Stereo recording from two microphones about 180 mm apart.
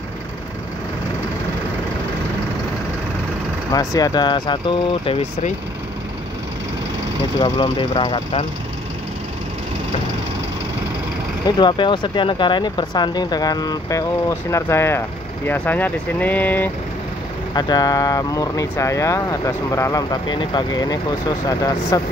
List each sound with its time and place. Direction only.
3.7 s speech: 20° left (ahead or behind)
7.3 s speech: 30° left (ahead or behind)
11.4 s speech: 25° left (ahead or behind)
17.6 s speech: 25° left (ahead or behind)